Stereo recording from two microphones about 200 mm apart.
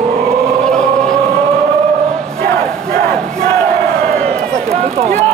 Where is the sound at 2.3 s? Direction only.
45° right (ahead or behind).